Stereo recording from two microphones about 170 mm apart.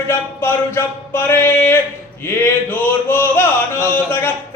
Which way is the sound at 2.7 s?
10° left (ahead or behind).